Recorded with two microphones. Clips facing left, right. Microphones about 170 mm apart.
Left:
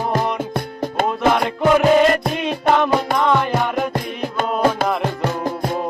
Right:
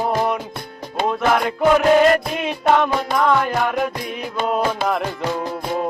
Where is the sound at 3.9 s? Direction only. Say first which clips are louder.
Left 3 dB; 50° left (ahead or behind).